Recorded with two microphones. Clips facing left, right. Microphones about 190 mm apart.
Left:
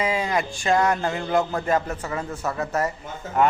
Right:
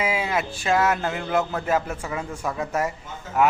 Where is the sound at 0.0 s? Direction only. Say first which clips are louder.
Left 1 dB; 5° right (ahead or behind).